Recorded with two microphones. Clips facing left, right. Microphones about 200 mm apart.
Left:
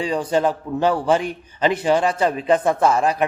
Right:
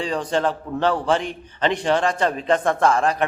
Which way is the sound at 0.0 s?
10° left (ahead or behind).